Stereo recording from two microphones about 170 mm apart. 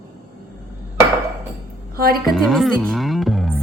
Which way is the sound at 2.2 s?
Centre (ahead or behind).